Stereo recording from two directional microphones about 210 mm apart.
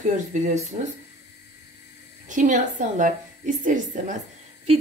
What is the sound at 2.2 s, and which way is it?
A woman's voice, 35° right (ahead or behind).